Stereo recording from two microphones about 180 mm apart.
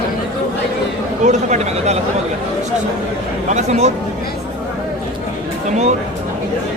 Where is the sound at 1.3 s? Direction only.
40° right (ahead or behind).